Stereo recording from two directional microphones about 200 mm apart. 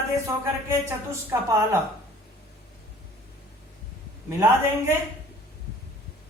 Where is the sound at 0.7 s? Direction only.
15° right (ahead or behind).